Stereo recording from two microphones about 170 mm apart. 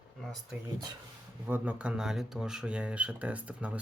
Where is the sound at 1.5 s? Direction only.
10° right (ahead or behind).